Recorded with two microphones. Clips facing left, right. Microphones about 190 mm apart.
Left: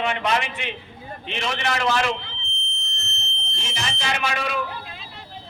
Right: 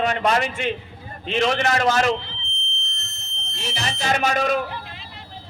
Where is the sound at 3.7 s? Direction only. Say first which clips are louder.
Right 4 dB; 35° right (ahead or behind).